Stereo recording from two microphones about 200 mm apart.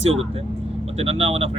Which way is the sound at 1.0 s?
30° right (ahead or behind).